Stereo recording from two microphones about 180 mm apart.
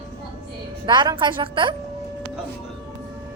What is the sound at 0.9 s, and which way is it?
Speech, 25° right (ahead or behind).